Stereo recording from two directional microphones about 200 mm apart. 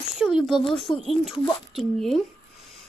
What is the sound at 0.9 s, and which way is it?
Speech, 20° left (ahead or behind).